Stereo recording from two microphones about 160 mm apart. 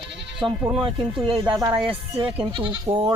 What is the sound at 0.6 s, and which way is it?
Speech, 5° right (ahead or behind).